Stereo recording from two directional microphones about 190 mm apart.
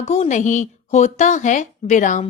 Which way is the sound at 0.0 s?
35° left (ahead or behind).